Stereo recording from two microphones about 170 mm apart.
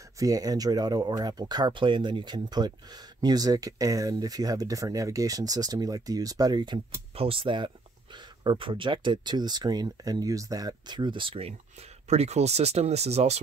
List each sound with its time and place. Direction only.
0.2 s speech: 20° right (ahead or behind); by 13.4 s 40° right (ahead or behind)